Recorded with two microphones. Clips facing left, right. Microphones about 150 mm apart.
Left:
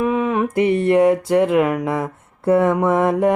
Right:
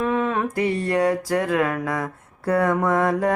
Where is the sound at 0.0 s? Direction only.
15° left (ahead or behind).